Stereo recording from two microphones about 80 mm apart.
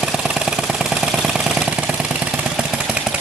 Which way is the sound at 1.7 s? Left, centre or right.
Centre.